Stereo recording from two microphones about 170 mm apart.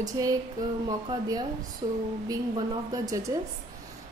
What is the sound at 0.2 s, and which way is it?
A woman's voice, 20° right (ahead or behind).